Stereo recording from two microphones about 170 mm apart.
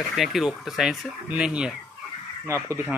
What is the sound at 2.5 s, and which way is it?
Speech, 15° right (ahead or behind).